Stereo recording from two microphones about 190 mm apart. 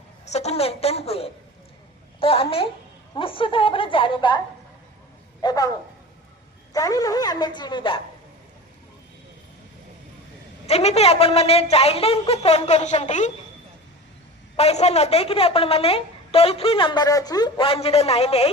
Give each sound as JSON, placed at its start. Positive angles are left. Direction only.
{"t": 0.3, "sound": "a woman's voice", "side_deg": 35}
{"t": 5.4, "sound": "speech", "side_deg": 20}
{"t": 6.7, "sound": "a woman's voice", "side_deg": 20}
{"t": 10.7, "sound": "a woman's voice", "side_deg": 35}
{"t": 14.5, "sound": "a woman's voice", "side_deg": 35}